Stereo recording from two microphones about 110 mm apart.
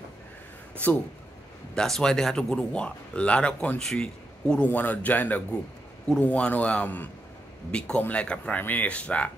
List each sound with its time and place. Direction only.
1.8 s speech: 5° left (ahead or behind)